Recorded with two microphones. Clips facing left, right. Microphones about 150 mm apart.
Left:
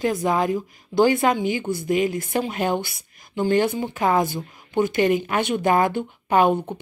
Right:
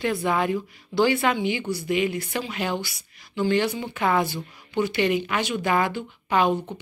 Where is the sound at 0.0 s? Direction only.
40° left (ahead or behind).